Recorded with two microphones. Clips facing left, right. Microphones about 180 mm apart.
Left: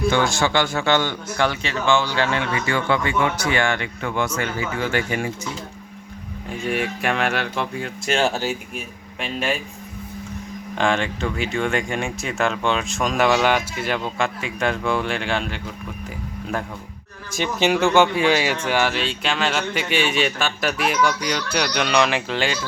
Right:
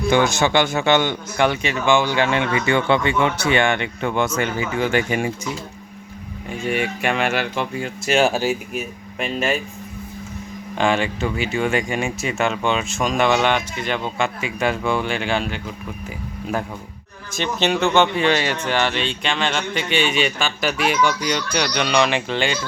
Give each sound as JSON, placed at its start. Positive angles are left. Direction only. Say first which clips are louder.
{"t": 0.1, "sound": "speech", "louder": "right 7 dB", "side_deg": -20}
{"t": 6.5, "sound": "speech", "louder": "right 1 dB", "side_deg": 0}
{"t": 10.8, "sound": "speech", "louder": "right 2 dB", "side_deg": -5}
{"t": 17.3, "sound": "speech", "louder": "left 1 dB", "side_deg": 10}